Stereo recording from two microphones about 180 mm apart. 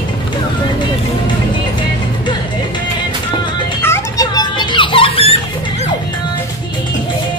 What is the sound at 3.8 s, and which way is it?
Children playing, 15° left (ahead or behind).